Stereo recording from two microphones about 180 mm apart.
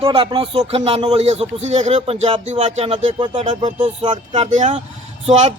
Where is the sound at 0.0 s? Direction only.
30° right (ahead or behind).